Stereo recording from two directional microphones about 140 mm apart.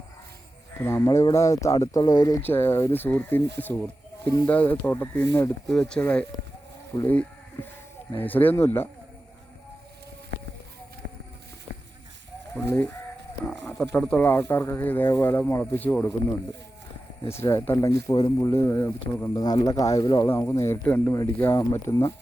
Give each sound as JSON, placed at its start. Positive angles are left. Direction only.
{"t": 0.8, "sound": "speech", "side_deg": 15}
{"t": 2.5, "sound": "speech", "side_deg": 15}
{"t": 5.6, "sound": "speech", "side_deg": 5}
{"t": 12.6, "sound": "speech", "side_deg": 15}
{"t": 13.9, "sound": "speech", "side_deg": 10}
{"t": 17.2, "sound": "speech", "side_deg": 20}
{"t": 19.9, "sound": "speech", "side_deg": 25}